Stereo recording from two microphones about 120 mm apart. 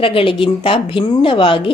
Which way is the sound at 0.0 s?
50° left (ahead or behind).